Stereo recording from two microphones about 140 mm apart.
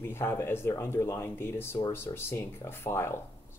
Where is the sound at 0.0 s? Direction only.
15° left (ahead or behind).